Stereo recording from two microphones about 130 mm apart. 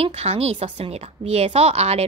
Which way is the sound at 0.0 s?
55° right (ahead or behind).